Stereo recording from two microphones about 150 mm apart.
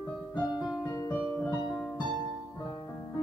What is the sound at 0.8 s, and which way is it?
Music, 20° left (ahead or behind).